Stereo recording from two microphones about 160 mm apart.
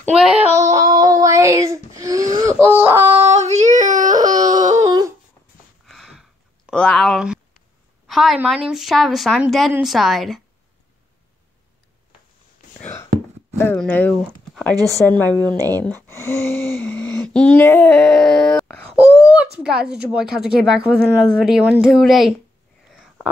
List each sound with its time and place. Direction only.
0.1 s speech: 5° right (ahead or behind)
0.6 s child singing: 20° right (ahead or behind)
3.1 s yodeling: 40° right (ahead or behind)
4.7 s humming: 20° right (ahead or behind)
5.9 s a sound: centre (ahead or behind)
8.1 s a woman's voice: centre (ahead or behind)
13.6 s speech: 10° left (ahead or behind)
14.5 s a sound: 5° left (ahead or behind)
14.9 s speech: 15° left (ahead or behind)
15.4 s speech: 20° right (ahead or behind)
15.7 s speech: 10° left (ahead or behind)
19.6 s speech: 5° right (ahead or behind)